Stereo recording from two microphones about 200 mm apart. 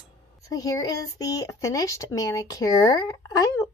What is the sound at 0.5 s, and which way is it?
A woman's voice, 15° left (ahead or behind).